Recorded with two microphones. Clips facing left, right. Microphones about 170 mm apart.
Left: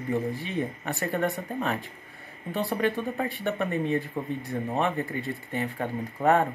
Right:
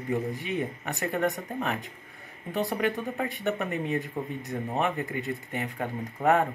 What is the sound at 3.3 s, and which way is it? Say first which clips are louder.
Speech: left 1 dB; 20° right (ahead or behind).